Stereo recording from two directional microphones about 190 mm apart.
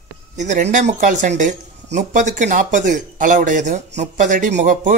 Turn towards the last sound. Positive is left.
turn(degrees=-40)  # may be behind; listen again after turning